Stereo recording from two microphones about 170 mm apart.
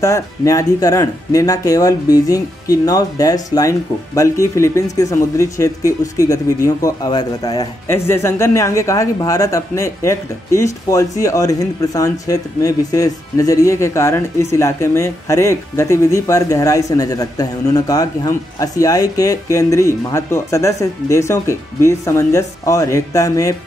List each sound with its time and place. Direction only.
0.0 s speech: 20° left (ahead or behind)